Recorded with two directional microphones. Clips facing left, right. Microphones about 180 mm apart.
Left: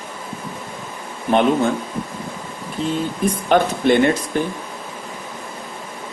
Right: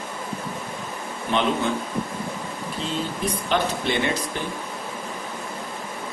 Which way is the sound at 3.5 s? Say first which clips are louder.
Left 9 dB; 50° left (ahead or behind).